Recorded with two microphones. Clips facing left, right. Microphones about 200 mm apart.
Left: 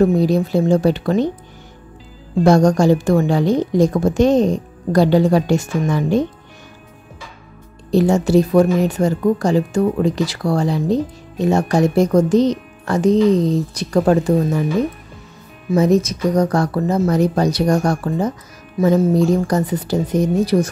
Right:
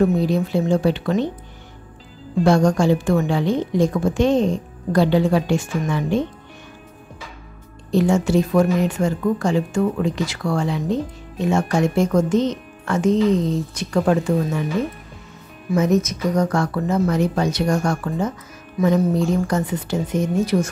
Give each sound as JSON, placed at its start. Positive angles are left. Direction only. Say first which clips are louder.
{"t": 0.0, "sound": "speech", "louder": "left 3 dB", "side_deg": 40}
{"t": 2.4, "sound": "speech", "louder": "left 4 dB", "side_deg": 40}
{"t": 7.9, "sound": "speech", "louder": "left 3 dB", "side_deg": 35}
{"t": 15.7, "sound": "speech", "louder": "left 3 dB", "side_deg": 35}